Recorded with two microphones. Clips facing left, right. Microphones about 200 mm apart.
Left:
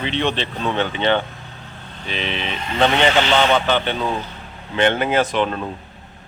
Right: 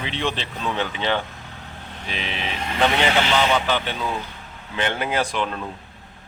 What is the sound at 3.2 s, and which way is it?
Speech, 30° left (ahead or behind).